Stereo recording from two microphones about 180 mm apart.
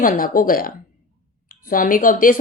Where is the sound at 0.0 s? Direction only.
50° left (ahead or behind).